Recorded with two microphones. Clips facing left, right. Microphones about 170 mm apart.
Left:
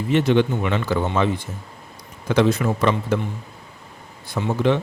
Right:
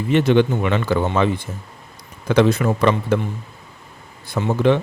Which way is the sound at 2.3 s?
65° right (ahead or behind).